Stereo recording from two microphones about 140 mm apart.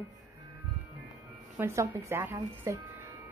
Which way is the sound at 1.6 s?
20° right (ahead or behind).